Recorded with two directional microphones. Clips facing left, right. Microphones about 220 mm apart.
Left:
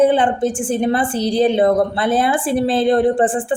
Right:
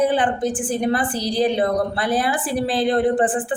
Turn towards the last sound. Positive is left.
turn(degrees=25)  # may be behind; listen again after turning